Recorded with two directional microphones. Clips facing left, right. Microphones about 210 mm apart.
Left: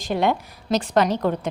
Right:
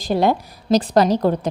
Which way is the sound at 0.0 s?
35° right (ahead or behind).